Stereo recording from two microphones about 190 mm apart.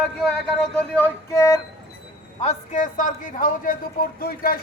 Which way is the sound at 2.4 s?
40° left (ahead or behind).